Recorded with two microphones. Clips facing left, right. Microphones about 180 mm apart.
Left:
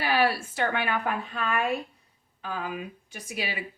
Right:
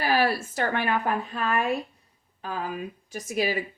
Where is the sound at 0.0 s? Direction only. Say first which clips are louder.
Right 1 dB; 40° right (ahead or behind).